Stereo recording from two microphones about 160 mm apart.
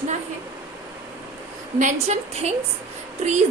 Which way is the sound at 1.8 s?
40° right (ahead or behind).